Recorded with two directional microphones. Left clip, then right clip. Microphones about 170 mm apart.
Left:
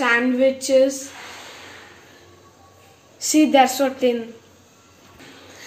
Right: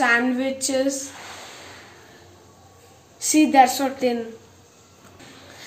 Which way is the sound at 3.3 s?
10° right (ahead or behind).